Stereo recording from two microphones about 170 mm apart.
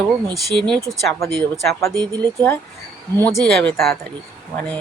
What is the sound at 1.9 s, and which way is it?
Speech, 25° right (ahead or behind).